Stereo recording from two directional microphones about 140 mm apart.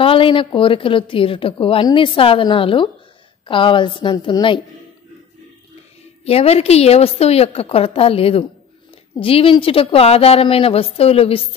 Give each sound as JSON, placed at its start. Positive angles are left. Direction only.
{"t": 0.0, "sound": "a woman's voice", "side_deg": 40}
{"t": 6.2, "sound": "a woman's voice", "side_deg": 45}